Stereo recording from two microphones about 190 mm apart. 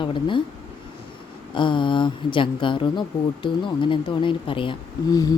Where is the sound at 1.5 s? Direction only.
25° left (ahead or behind).